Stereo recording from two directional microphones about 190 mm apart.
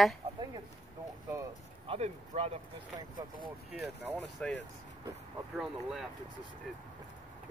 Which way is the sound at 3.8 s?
5° right (ahead or behind).